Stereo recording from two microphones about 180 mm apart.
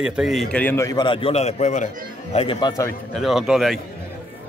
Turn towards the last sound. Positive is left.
turn(degrees=0)  # may be behind; listen again after turning